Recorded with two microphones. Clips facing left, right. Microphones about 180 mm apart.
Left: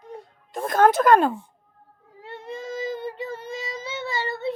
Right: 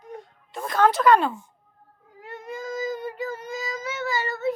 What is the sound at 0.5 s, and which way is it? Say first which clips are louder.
Speech: left 3 dB; 50° left (ahead or behind).